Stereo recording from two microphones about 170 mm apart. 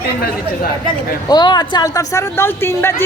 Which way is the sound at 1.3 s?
25° left (ahead or behind).